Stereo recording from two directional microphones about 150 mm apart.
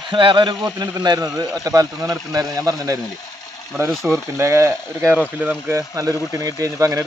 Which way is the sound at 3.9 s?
Centre (ahead or behind).